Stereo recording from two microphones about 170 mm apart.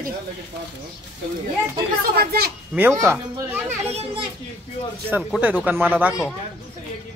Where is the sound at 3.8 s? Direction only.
40° right (ahead or behind).